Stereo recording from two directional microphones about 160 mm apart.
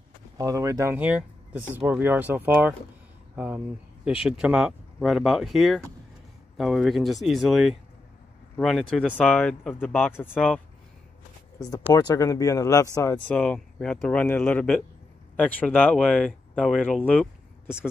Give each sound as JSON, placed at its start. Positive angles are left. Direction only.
{"t": 0.4, "sound": "speech", "side_deg": -20}
{"t": 11.6, "sound": "speech", "side_deg": 25}
{"t": 13.1, "sound": "speech", "side_deg": 10}